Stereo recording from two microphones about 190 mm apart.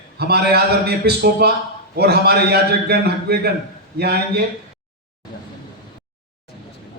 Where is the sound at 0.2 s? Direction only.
55° right (ahead or behind).